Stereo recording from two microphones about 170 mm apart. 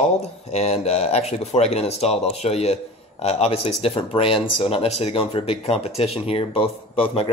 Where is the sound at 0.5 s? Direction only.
40° left (ahead or behind).